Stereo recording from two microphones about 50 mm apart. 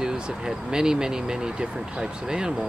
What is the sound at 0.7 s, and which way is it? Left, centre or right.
Speech, centre.